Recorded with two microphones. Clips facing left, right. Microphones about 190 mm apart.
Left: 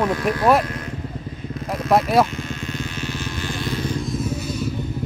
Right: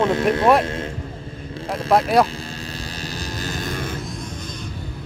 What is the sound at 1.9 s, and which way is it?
Speech, centre (ahead or behind).